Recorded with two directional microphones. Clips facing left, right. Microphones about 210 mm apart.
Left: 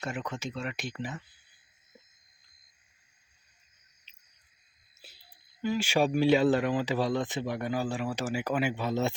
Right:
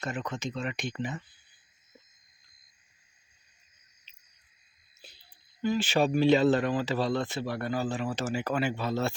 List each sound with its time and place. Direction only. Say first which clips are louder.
0.0 s speech: right 1 dB; 10° left (ahead or behind)
5.0 s a sound: right 1 dB; 5° left (ahead or behind)
5.6 s speech: right 1 dB; 10° left (ahead or behind)